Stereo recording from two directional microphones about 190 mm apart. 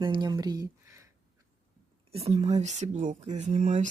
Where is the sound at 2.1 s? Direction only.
35° right (ahead or behind).